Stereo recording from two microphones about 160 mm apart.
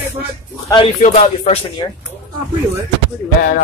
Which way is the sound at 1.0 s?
45° left (ahead or behind).